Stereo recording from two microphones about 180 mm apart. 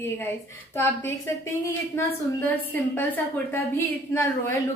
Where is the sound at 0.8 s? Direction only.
15° left (ahead or behind).